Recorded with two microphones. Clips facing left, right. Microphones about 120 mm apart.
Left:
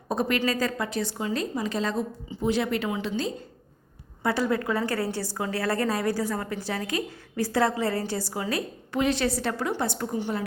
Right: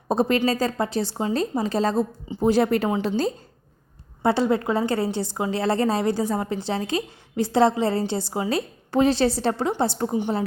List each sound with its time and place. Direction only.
0.1 s a woman's voice: 30° right (ahead or behind)
4.2 s a woman's voice: 25° right (ahead or behind)